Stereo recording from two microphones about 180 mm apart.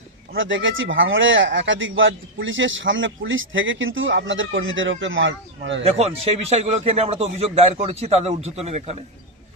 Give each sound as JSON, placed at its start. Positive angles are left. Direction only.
{"t": 0.3, "sound": "speech", "side_deg": -90}
{"t": 5.8, "sound": "a man's voice", "side_deg": -35}